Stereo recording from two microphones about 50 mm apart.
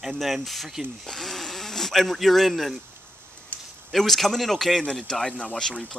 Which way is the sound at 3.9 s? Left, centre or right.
Centre.